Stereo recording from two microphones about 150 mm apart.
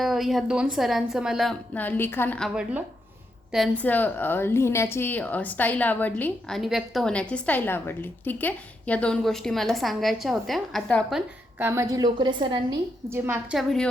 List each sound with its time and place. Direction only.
0.0 s a woman's voice: centre (ahead or behind)
1.7 s a woman's voice: 10° left (ahead or behind)
2.4 s a woman's voice: 5° right (ahead or behind)
3.8 s a woman's voice: 10° left (ahead or behind)
6.6 s a woman's voice: centre (ahead or behind)
11.6 s a woman's voice: 15° right (ahead or behind)
13.1 s a woman's voice: 15° right (ahead or behind)
13.6 s a woman's voice: centre (ahead or behind)